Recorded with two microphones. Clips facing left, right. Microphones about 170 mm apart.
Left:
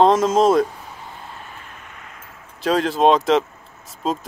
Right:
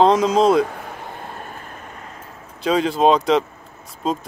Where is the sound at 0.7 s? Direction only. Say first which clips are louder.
Right 5 dB; 65° right (ahead or behind).